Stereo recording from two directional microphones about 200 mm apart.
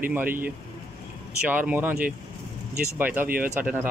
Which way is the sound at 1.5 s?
10° right (ahead or behind).